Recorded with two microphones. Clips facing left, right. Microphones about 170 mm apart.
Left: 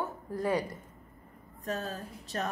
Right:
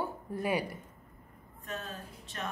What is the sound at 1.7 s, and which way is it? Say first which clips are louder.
Speech: left 6 dB; 40° left (ahead or behind).